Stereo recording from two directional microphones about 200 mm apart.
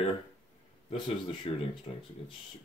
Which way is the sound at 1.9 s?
30° left (ahead or behind).